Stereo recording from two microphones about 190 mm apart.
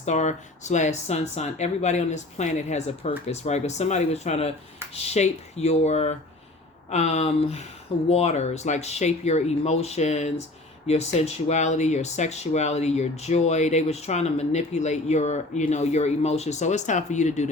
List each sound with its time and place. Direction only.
0.0 s speech: 40° left (ahead or behind)